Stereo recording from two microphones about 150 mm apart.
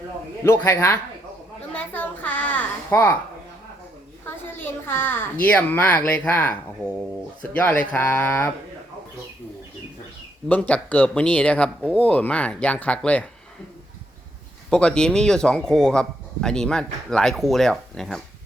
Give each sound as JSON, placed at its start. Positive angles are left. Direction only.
{"t": 0.4, "sound": "speech", "side_deg": 15}
{"t": 1.7, "sound": "a sound", "side_deg": 10}
{"t": 4.3, "sound": "speech", "side_deg": 15}
{"t": 7.5, "sound": "speech", "side_deg": 10}
{"t": 10.5, "sound": "speech", "side_deg": 10}
{"t": 14.7, "sound": "speech", "side_deg": 5}